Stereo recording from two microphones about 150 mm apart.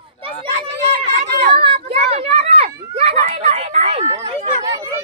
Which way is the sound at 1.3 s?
90° right.